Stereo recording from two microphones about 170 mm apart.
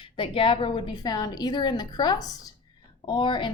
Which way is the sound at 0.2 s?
30° left (ahead or behind).